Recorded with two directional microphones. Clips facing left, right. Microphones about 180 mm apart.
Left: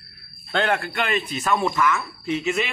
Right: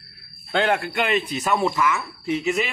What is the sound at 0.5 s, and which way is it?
Speech, 10° right (ahead or behind).